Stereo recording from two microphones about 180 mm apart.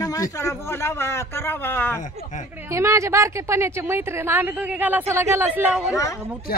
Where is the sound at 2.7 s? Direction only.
15° right (ahead or behind).